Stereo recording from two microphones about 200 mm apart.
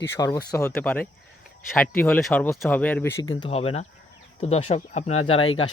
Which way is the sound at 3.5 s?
30° left (ahead or behind).